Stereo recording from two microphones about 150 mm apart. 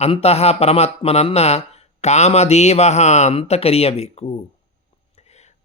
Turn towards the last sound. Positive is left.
turn(degrees=45)  # may be behind; listen again after turning